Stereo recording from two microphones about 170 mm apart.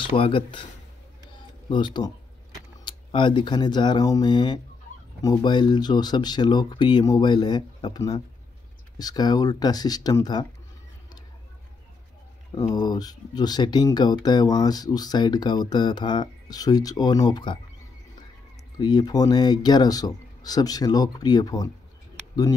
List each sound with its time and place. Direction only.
0.1 s speech: 35° left (ahead or behind)
1.7 s speech: 25° left (ahead or behind)
12.5 s speech: 25° left (ahead or behind)
18.8 s speech: 25° left (ahead or behind)